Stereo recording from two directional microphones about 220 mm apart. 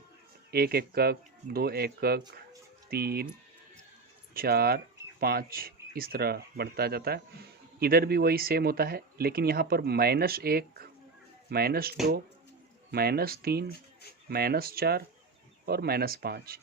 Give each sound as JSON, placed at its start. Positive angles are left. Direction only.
{"t": 0.5, "sound": "speech", "side_deg": -45}
{"t": 4.4, "sound": "speech", "side_deg": -45}